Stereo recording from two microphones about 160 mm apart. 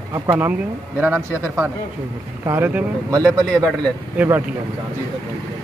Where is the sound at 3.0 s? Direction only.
25° right (ahead or behind).